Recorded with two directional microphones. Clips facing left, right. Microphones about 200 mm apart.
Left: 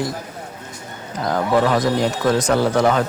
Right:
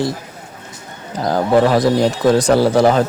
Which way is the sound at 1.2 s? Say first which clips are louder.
Right 4 dB; 30° right (ahead or behind).